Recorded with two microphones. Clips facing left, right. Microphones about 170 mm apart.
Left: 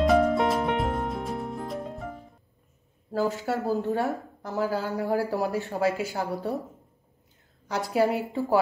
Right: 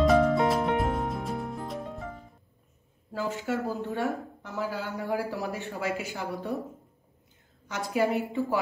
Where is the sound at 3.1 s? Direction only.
40° left (ahead or behind).